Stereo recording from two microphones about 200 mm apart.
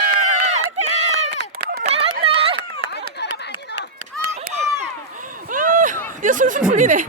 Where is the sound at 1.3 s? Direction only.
55° right (ahead or behind).